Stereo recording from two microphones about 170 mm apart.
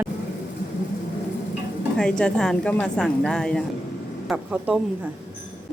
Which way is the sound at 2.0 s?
5° left (ahead or behind).